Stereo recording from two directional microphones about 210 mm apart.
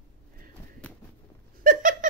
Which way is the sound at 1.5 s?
40° right (ahead or behind).